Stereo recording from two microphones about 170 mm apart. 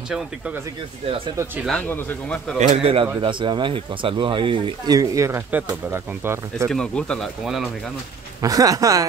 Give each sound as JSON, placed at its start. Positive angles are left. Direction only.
{"t": 1.7, "sound": "a man's voice", "side_deg": 10}
{"t": 2.6, "sound": "speech", "side_deg": -40}
{"t": 6.7, "sound": "speech", "side_deg": 5}
{"t": 8.4, "sound": "speech", "side_deg": -20}